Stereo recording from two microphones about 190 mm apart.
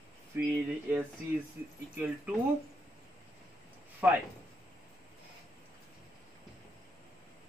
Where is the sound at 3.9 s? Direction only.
10° right (ahead or behind).